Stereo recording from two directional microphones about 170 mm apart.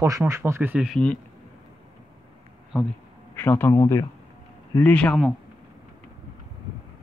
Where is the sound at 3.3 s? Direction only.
10° left (ahead or behind).